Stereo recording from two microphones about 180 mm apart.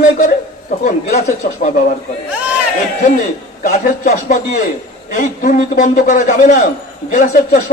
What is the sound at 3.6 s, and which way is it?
A man's voice, 40° left (ahead or behind).